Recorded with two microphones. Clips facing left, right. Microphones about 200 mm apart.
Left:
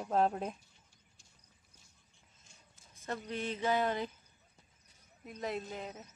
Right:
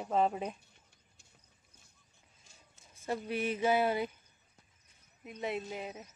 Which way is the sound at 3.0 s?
10° right (ahead or behind).